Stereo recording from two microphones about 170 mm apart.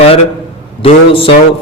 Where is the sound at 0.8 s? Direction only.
35° left (ahead or behind).